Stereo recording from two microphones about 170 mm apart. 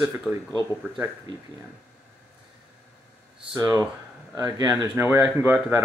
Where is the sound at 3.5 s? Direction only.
20° right (ahead or behind).